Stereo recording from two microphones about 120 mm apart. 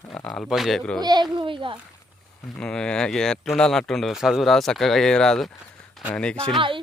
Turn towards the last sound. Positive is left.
turn(degrees=-45)  # may be behind; listen again after turning